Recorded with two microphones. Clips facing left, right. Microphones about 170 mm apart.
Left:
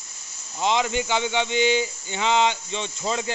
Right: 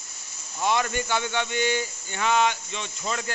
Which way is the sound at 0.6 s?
20° left (ahead or behind).